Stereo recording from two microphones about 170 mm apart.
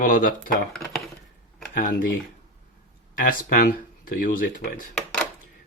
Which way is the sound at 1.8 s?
55° left (ahead or behind).